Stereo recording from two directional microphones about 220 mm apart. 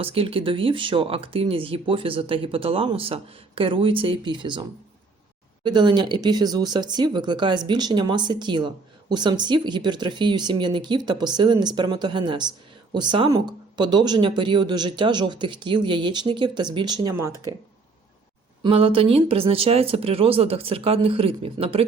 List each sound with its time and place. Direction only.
0.0 s speech: 25° right (ahead or behind)
5.6 s speech: 20° right (ahead or behind)
18.6 s speech: 25° right (ahead or behind)